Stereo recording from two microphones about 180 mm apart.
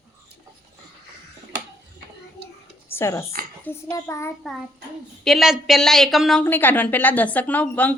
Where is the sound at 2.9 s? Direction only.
15° left (ahead or behind).